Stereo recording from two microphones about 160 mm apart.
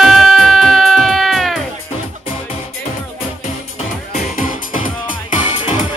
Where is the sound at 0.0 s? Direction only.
Centre (ahead or behind).